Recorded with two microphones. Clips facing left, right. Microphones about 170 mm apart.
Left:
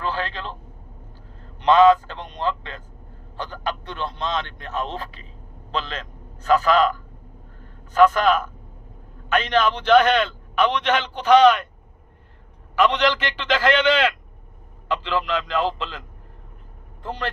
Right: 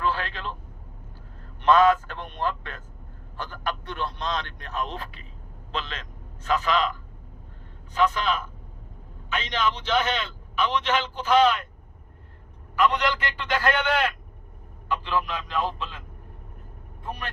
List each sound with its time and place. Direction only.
0.0 s vehicle: 35° left (ahead or behind)
1.6 s a man's voice: 25° left (ahead or behind)
3.8 s a man's voice: 20° left (ahead or behind); by 6.9 s 45° left (ahead or behind)
7.9 s a man's voice: 50° left (ahead or behind); by 11.7 s 70° left (ahead or behind)
12.7 s a man's voice: 90° left